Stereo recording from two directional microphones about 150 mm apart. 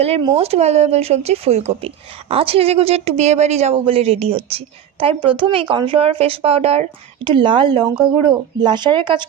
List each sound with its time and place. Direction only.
0.3 s a woman's voice: 45° right (ahead or behind)